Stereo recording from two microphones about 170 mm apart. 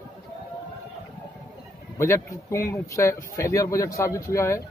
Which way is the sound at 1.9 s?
15° left (ahead or behind).